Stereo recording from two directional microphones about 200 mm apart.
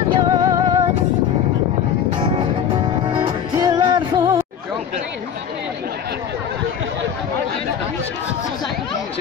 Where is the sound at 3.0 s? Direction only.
25° right (ahead or behind).